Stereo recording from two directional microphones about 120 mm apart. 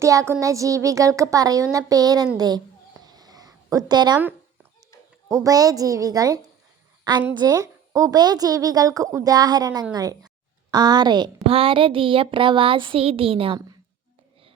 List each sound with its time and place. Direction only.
0.0 s a woman's voice: 25° right (ahead or behind)
3.0 s a sound: 35° right (ahead or behind)
5.3 s a woman's voice: 30° right (ahead or behind)
11.4 s speech: 50° right (ahead or behind)